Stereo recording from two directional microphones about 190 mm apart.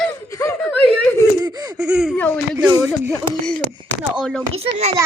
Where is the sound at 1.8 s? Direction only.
5° right (ahead or behind).